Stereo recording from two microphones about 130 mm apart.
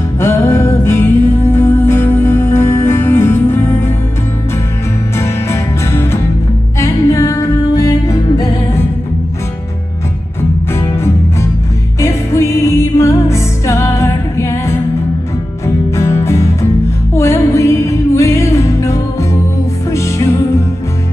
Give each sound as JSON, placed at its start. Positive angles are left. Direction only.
{"t": 0.2, "sound": "music", "side_deg": 20}
{"t": 5.1, "sound": "music", "side_deg": 20}
{"t": 10.7, "sound": "music", "side_deg": 20}